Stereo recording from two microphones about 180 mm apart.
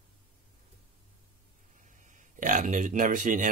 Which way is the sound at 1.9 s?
45° right (ahead or behind).